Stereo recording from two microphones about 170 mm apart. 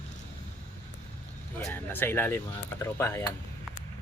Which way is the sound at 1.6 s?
10° left (ahead or behind).